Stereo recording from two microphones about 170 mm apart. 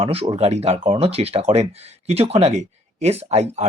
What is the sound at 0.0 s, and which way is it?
Speech, 35° right (ahead or behind).